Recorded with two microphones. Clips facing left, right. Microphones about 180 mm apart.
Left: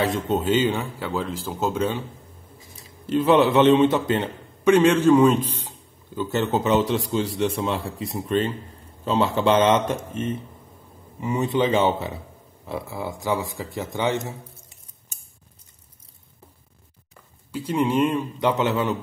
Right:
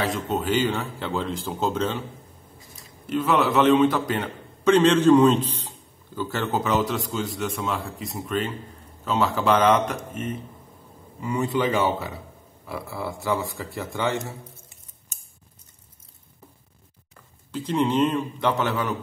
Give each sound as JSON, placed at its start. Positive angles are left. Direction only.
{"t": 0.0, "sound": "speech", "side_deg": 30}
{"t": 3.1, "sound": "a man's voice", "side_deg": 30}
{"t": 4.6, "sound": "a man's voice", "side_deg": 10}
{"t": 17.5, "sound": "speech", "side_deg": 10}